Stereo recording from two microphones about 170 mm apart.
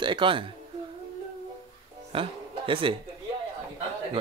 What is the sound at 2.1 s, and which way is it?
Speech, 30° right (ahead or behind).